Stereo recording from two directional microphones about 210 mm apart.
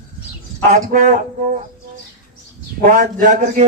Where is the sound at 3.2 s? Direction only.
35° right (ahead or behind).